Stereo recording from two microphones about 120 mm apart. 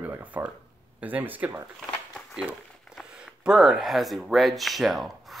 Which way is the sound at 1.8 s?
Centre (ahead or behind).